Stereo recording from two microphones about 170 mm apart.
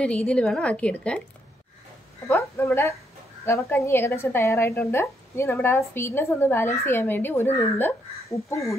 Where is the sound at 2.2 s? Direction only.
15° left (ahead or behind).